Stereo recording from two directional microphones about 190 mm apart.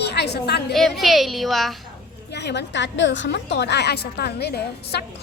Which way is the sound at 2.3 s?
65° left (ahead or behind).